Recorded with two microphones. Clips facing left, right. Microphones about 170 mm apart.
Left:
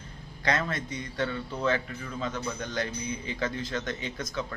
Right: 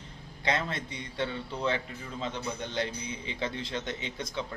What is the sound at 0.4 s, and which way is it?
Speech, 25° right (ahead or behind).